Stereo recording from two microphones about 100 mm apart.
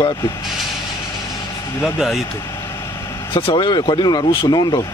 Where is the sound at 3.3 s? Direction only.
55° left (ahead or behind).